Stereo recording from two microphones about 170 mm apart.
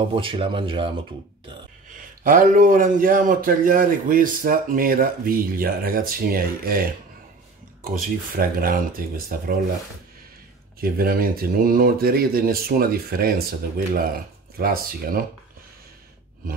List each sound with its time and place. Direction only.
0.0 s speech: 30° right (ahead or behind)
2.2 s a man's voice: 50° right (ahead or behind)
10.8 s a man's voice: 60° right (ahead or behind)